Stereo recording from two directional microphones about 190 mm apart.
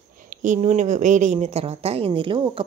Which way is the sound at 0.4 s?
40° right (ahead or behind).